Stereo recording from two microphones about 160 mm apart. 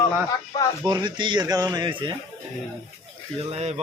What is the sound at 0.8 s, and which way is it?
Speech, 25° right (ahead or behind).